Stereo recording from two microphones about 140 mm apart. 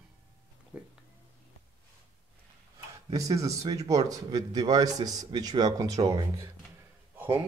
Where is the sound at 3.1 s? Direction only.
25° right (ahead or behind).